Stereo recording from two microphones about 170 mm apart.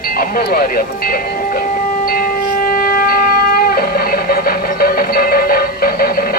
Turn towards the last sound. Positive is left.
turn(degrees=60)  # may be behind; listen again after turning